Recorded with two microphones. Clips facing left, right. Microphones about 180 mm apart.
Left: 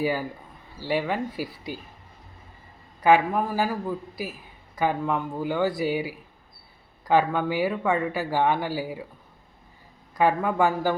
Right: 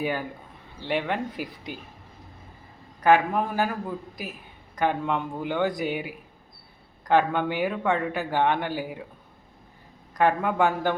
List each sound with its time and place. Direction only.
0.0 s speech: 5° left (ahead or behind)
3.0 s a man's voice: 5° left (ahead or behind)
10.2 s speech: 5° left (ahead or behind)